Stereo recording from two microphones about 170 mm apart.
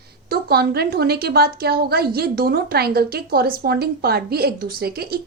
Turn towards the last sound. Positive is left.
turn(degrees=-65)  # may be behind; listen again after turning